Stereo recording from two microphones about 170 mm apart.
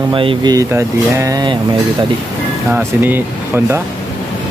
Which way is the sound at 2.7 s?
10° right (ahead or behind).